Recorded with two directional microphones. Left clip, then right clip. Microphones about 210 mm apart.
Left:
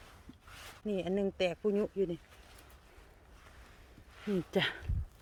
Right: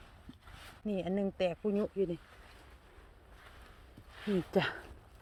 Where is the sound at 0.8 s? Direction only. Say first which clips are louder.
Left 2 dB; 5° left (ahead or behind).